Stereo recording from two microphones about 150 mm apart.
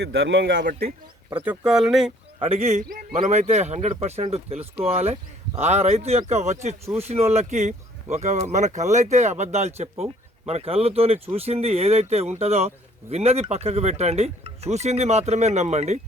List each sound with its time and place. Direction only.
0.0 s speech: 90° right
1.3 s speech: 10° right (ahead or behind)
2.4 s speech: 45° right (ahead or behind)
3.0 s speech: 60° right (ahead or behind)